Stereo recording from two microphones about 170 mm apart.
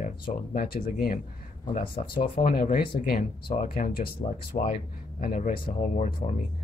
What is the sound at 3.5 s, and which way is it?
Speech, 45° left (ahead or behind).